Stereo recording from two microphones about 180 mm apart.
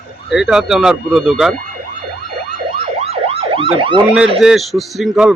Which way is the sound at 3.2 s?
30° right (ahead or behind).